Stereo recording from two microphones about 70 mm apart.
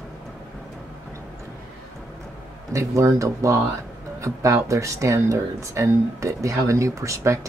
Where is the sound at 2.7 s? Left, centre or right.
Right.